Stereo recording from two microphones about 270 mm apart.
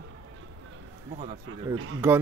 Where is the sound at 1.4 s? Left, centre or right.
Right.